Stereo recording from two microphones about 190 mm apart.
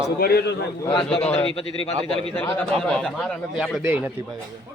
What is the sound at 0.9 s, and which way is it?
Speech, 25° left (ahead or behind).